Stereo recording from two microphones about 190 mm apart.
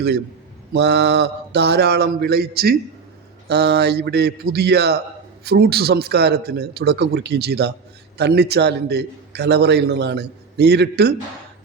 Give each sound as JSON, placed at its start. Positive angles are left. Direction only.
{"t": 0.7, "sound": "a man's voice", "side_deg": -65}